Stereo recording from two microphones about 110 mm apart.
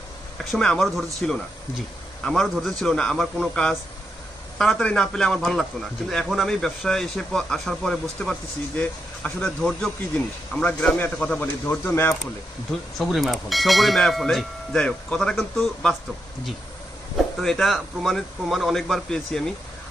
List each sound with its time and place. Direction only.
0.5 s a man's voice: 5° left (ahead or behind); by 12.1 s 20° left (ahead or behind)
13.0 s a man's voice: centre (ahead or behind)
17.4 s a man's voice: centre (ahead or behind)